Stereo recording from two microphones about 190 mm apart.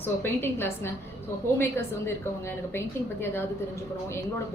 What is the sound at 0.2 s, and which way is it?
A woman's voice, 10° left (ahead or behind).